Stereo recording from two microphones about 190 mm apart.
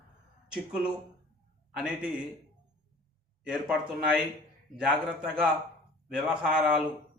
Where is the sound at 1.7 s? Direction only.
5° right (ahead or behind).